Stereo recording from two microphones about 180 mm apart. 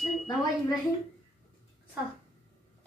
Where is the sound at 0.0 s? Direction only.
Centre (ahead or behind).